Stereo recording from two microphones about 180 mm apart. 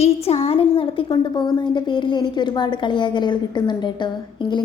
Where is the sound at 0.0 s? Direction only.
35° left (ahead or behind).